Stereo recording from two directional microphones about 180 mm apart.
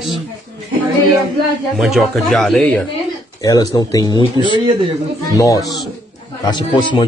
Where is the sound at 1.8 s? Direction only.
Centre (ahead or behind).